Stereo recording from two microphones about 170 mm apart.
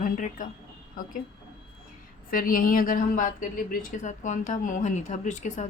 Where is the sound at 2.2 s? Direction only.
55° left (ahead or behind).